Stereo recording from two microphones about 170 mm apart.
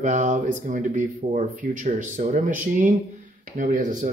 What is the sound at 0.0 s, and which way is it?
Speech, 45° right (ahead or behind).